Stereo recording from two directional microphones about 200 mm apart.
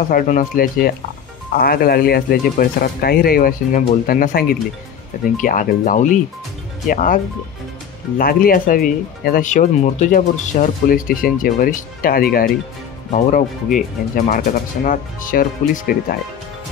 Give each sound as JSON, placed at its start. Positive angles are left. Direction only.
{"t": 0.1, "sound": "speech", "side_deg": 45}
{"t": 8.2, "sound": "speech", "side_deg": 45}